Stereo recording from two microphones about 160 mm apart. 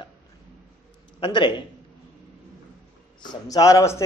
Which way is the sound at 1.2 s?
30° left (ahead or behind).